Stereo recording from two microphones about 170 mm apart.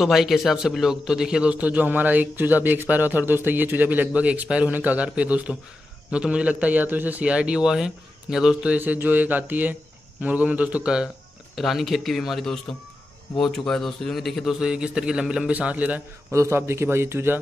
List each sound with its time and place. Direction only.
0.0 s a man's voice: centre (ahead or behind)